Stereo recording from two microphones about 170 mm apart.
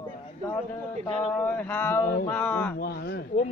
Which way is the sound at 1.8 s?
10° left (ahead or behind).